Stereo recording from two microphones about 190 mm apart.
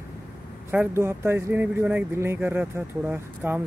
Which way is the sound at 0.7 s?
10° right (ahead or behind).